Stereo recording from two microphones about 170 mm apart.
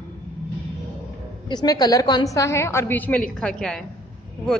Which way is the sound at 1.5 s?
25° left (ahead or behind).